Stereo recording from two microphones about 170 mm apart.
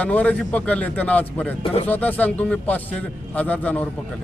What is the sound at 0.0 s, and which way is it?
Speech, 10° left (ahead or behind).